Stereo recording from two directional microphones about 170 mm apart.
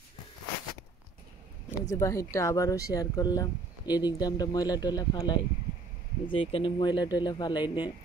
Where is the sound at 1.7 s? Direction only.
20° left (ahead or behind).